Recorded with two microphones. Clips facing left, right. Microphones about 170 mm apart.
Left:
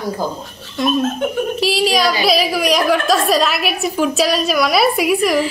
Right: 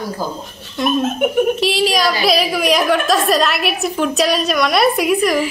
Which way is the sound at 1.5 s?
Centre (ahead or behind).